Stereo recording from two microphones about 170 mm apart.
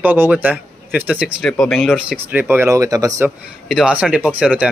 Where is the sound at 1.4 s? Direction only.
5° left (ahead or behind); by 3.3 s 20° right (ahead or behind).